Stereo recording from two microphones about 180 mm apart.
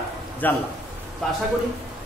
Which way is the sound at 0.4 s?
10° left (ahead or behind).